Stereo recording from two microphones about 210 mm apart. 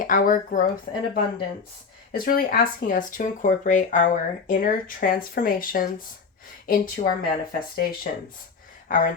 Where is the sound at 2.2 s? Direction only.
45° left (ahead or behind).